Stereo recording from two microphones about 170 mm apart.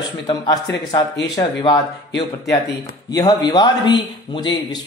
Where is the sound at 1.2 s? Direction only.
25° left (ahead or behind).